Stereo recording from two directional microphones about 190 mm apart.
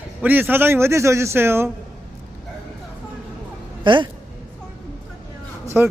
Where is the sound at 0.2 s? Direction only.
10° right (ahead or behind).